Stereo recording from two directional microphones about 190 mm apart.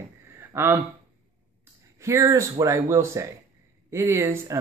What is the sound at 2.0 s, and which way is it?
Speech, 15° right (ahead or behind).